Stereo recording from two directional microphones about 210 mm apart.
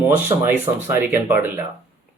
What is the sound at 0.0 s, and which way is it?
Speech, 10° right (ahead or behind).